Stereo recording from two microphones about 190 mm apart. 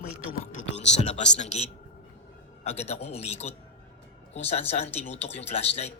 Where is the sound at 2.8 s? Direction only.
35° left (ahead or behind).